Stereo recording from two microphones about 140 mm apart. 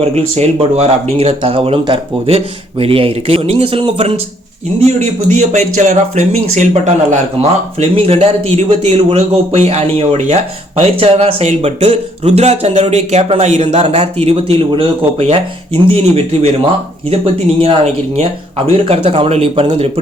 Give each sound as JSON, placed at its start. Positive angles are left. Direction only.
{"t": 0.0, "sound": "speech", "side_deg": -50}
{"t": 4.8, "sound": "a man's voice", "side_deg": -50}